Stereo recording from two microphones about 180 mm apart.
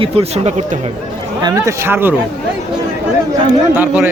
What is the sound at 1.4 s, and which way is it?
Speech, 20° right (ahead or behind).